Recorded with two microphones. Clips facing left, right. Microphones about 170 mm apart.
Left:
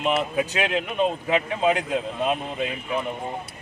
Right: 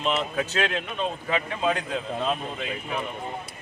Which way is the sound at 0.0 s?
10° left (ahead or behind).